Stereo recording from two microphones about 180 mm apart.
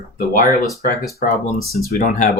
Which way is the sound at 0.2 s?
50° left (ahead or behind).